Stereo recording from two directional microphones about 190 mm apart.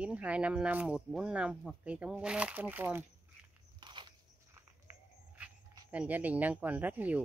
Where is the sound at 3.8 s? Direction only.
25° right (ahead or behind).